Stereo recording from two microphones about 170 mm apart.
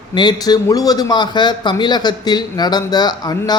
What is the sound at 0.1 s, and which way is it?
A man's voice, 25° left (ahead or behind).